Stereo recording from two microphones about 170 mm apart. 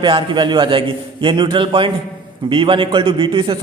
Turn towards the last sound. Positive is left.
turn(degrees=-30)  # may be behind; listen again after turning